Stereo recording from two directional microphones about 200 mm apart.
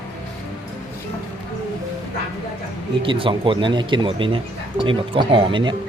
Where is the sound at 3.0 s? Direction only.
25° right (ahead or behind).